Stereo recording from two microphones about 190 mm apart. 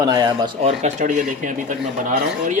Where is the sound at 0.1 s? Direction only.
20° right (ahead or behind).